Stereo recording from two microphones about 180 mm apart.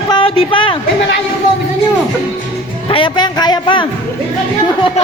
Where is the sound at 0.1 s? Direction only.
30° left (ahead or behind).